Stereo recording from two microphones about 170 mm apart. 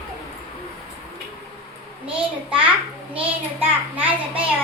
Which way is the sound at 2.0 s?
30° right (ahead or behind).